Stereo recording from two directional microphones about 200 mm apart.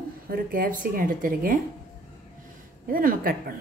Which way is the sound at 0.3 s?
45° right (ahead or behind).